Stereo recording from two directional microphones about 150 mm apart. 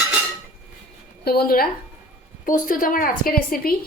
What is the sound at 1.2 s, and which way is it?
Speech, 85° left.